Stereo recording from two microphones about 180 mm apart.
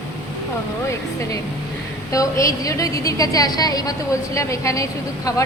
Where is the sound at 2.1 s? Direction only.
20° left (ahead or behind).